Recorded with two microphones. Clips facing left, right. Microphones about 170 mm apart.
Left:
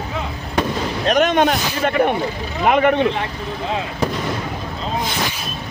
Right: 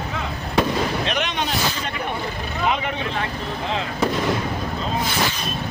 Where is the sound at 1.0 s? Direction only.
45° left (ahead or behind); by 3.0 s 60° left (ahead or behind).